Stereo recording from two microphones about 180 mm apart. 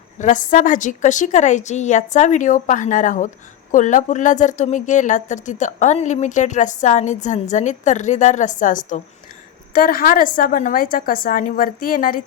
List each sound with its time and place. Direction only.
0.2 s a woman's voice: 45° left (ahead or behind)